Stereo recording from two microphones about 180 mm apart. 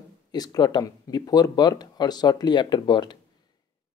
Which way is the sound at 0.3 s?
20° left (ahead or behind).